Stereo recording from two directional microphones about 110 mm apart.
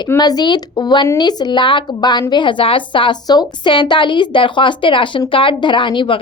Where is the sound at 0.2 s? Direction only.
40° left (ahead or behind).